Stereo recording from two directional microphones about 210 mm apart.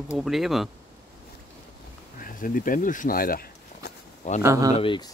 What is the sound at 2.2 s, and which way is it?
Speech, 40° left (ahead or behind).